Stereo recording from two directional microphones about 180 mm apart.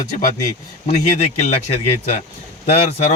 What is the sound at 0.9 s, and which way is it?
A man's voice, 40° left (ahead or behind).